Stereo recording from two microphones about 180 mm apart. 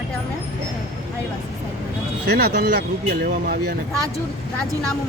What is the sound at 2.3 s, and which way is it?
Speech, 65° right (ahead or behind).